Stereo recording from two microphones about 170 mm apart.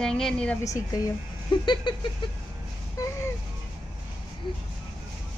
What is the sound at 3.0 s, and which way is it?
Music, 20° left (ahead or behind).